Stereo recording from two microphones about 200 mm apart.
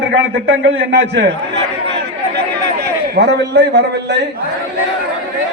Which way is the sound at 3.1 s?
55° right (ahead or behind).